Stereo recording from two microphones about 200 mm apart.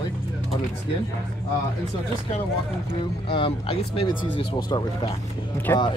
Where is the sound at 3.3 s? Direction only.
25° left (ahead or behind).